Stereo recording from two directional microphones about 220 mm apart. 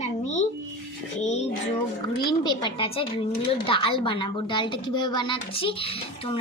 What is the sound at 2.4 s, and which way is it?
A woman's voice, 20° left (ahead or behind).